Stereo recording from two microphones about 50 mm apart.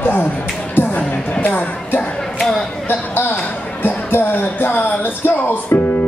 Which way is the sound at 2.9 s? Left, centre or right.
Left.